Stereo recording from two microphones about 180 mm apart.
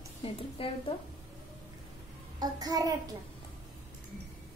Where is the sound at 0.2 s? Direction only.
30° left (ahead or behind).